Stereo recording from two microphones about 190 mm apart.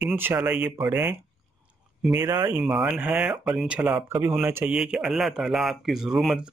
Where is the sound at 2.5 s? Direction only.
5° right (ahead or behind).